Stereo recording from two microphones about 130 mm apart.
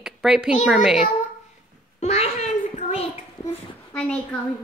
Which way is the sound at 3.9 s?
10° left (ahead or behind).